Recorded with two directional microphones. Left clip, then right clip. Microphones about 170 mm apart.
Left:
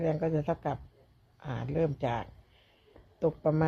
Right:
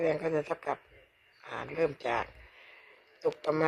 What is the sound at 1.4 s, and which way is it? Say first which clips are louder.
Speech: even; 35° right (ahead or behind).